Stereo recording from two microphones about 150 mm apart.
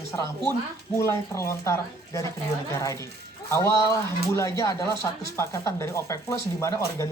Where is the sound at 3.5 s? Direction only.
20° left (ahead or behind).